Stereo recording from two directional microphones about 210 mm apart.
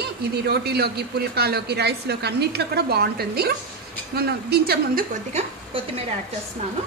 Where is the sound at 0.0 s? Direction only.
50° right (ahead or behind).